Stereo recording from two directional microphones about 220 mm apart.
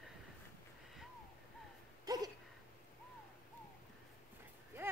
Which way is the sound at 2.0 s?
15° right (ahead or behind).